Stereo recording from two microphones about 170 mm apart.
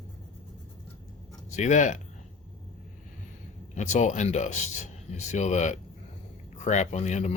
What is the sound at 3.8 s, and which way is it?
Speech, 45° left (ahead or behind).